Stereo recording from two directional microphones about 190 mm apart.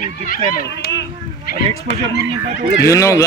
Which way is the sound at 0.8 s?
65° left (ahead or behind).